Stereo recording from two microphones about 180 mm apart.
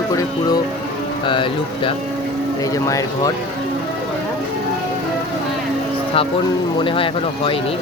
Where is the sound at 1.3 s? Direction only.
30° left (ahead or behind).